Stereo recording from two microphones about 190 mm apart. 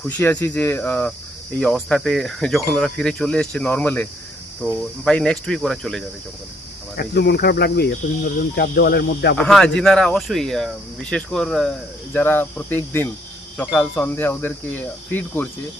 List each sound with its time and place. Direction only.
0.0 s speech: 10° left (ahead or behind)
6.9 s speech: 55° left (ahead or behind)
9.4 s speech: 5° left (ahead or behind)